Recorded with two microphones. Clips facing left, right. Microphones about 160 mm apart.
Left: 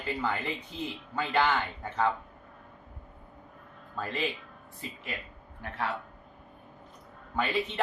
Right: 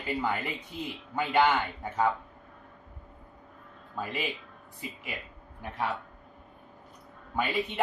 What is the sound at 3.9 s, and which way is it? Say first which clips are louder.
Speech: left 1 dB; 10° right (ahead or behind).